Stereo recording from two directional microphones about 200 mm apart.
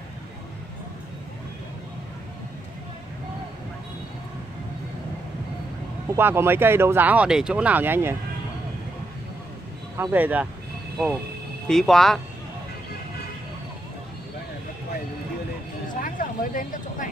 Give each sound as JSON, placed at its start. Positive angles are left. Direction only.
{"t": 6.0, "sound": "speech", "side_deg": -10}
{"t": 9.9, "sound": "speech", "side_deg": -10}
{"t": 11.6, "sound": "speech", "side_deg": 0}
{"t": 16.0, "sound": "vehicle", "side_deg": 40}